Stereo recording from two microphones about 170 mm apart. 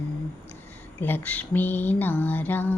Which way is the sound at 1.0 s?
10° left (ahead or behind).